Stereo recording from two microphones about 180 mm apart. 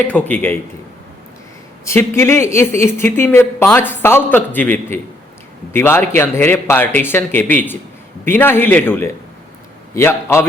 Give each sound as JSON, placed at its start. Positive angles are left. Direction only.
{"t": 0.0, "sound": "speech", "side_deg": 10}
{"t": 1.8, "sound": "speech", "side_deg": 15}